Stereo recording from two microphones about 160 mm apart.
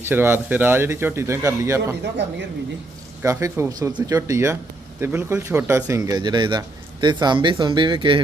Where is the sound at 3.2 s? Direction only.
20° right (ahead or behind).